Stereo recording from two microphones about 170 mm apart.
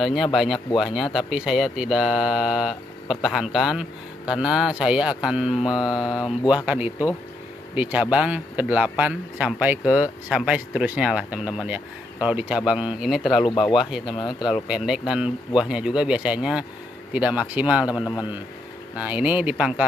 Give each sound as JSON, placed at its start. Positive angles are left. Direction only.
{"t": 0.0, "sound": "speech", "side_deg": 0}
{"t": 13.4, "sound": "speech", "side_deg": 30}
{"t": 13.7, "sound": "speech", "side_deg": -5}
{"t": 14.0, "sound": "speech", "side_deg": 25}
{"t": 14.5, "sound": "speech", "side_deg": -5}
{"t": 18.9, "sound": "speech", "side_deg": -10}